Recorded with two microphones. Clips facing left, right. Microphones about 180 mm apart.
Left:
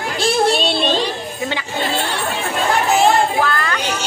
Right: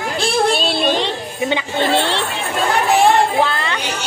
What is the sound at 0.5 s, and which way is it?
Child singing, centre (ahead or behind).